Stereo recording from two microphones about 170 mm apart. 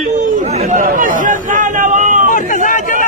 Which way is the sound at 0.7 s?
50° right (ahead or behind).